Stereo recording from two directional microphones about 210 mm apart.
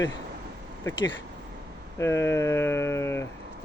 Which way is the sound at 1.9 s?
15° left (ahead or behind).